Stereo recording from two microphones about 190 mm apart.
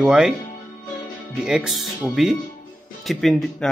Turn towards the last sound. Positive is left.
turn(degrees=0)  # may be behind; listen again after turning